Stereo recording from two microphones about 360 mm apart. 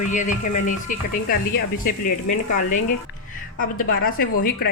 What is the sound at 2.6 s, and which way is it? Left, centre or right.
Speech, left.